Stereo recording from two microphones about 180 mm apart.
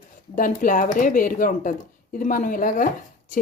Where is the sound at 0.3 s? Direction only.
50° left (ahead or behind).